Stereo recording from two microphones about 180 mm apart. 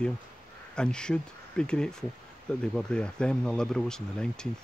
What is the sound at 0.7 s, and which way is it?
Speech, 5° left (ahead or behind).